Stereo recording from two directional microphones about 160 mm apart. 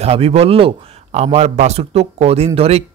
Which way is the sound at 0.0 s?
40° right (ahead or behind).